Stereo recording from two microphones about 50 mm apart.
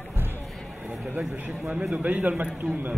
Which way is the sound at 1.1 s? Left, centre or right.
Right.